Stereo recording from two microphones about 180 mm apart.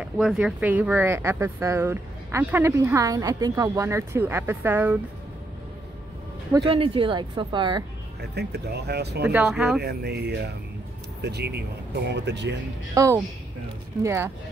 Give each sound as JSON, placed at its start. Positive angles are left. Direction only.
{"t": 0.0, "sound": "speech", "side_deg": -5}
{"t": 6.5, "sound": "a woman's voice", "side_deg": -30}
{"t": 8.2, "sound": "speech", "side_deg": -65}
{"t": 9.2, "sound": "speech", "side_deg": -10}
{"t": 9.8, "sound": "speech", "side_deg": -65}
{"t": 12.9, "sound": "speech", "side_deg": -15}